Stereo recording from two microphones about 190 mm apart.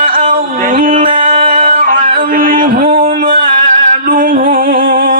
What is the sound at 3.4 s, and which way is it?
Music, 45° right (ahead or behind).